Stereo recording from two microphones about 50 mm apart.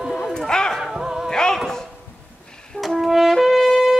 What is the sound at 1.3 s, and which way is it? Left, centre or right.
Music, centre.